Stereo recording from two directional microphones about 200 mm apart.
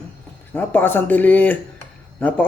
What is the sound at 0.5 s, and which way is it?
Speech, 10° left (ahead or behind).